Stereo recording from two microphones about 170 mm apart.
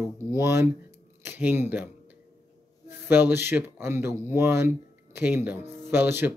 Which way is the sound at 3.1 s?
15° right (ahead or behind).